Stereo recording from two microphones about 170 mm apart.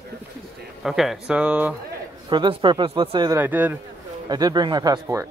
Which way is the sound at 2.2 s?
30° right (ahead or behind).